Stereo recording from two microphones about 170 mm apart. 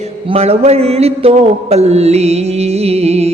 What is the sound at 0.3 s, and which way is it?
Music, 35° right (ahead or behind).